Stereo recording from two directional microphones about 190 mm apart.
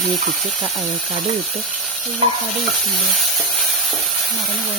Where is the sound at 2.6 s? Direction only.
Centre (ahead or behind).